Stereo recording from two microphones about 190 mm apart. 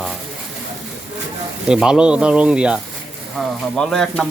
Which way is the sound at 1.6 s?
5° right (ahead or behind).